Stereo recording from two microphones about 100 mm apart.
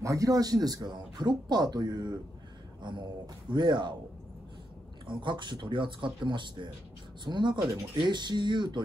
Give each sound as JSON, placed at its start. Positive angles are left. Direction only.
{"t": 0.0, "sound": "speech", "side_deg": -35}
{"t": 5.0, "sound": "speech", "side_deg": -50}